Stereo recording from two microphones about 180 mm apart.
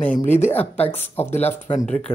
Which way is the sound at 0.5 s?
10° left (ahead or behind).